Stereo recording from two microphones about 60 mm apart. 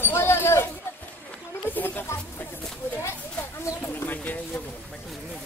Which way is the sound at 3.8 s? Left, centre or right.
Left.